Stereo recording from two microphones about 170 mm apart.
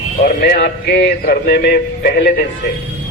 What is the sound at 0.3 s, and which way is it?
Speech, 60° left (ahead or behind).